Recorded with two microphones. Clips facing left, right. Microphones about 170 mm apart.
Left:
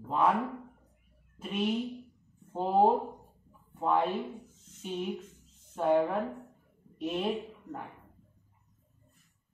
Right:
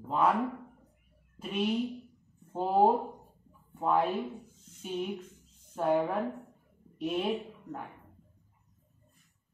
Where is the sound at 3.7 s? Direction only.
Centre (ahead or behind).